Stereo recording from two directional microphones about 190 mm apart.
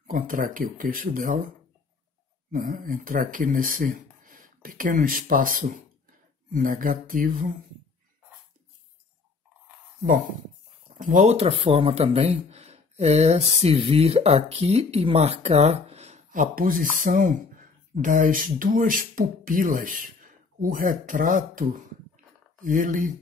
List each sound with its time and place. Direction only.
0.0 s speech: 50° right (ahead or behind)
2.5 s speech: 45° right (ahead or behind)
11.0 s speech: 40° right (ahead or behind)
22.1 s a sound: 40° right (ahead or behind)